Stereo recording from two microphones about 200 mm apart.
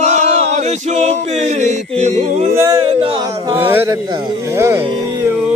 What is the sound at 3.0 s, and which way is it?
Speech, 20° right (ahead or behind).